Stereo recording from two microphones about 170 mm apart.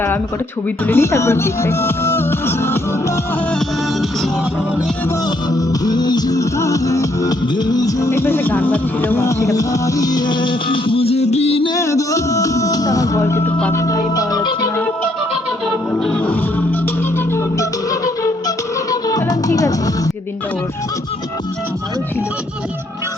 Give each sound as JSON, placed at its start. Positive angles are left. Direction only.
{"t": 0.9, "sound": "speech", "side_deg": 15}
{"t": 5.5, "sound": "music", "side_deg": 25}
{"t": 11.7, "sound": "music", "side_deg": 20}
{"t": 16.0, "sound": "music", "side_deg": 5}